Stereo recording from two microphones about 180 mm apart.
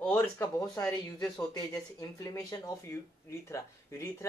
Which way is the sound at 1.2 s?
25° left (ahead or behind).